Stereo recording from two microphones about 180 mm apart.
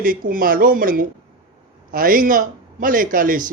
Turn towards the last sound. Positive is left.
turn(degrees=-50)  # may be behind; listen again after turning